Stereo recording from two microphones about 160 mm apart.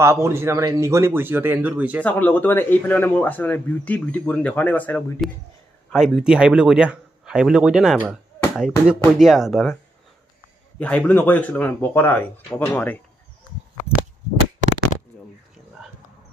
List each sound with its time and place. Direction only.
0.0 s speech: 15° right (ahead or behind)
2.0 s speech: 10° left (ahead or behind)
10.8 s speech: 10° left (ahead or behind)